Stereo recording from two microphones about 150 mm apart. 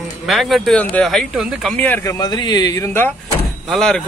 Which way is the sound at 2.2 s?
25° left (ahead or behind).